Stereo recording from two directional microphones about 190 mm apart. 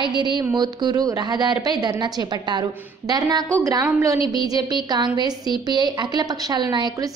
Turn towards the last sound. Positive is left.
turn(degrees=-20)  # may be behind; listen again after turning